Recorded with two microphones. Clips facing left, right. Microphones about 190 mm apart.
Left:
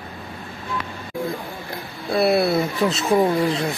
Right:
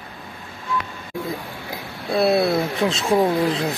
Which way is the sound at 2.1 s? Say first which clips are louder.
Even; centre (ahead or behind).